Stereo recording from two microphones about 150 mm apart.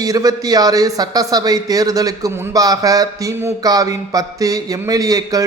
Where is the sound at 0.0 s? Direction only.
25° right (ahead or behind).